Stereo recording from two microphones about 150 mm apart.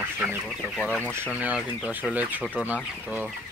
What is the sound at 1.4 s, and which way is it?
Speech, 10° right (ahead or behind).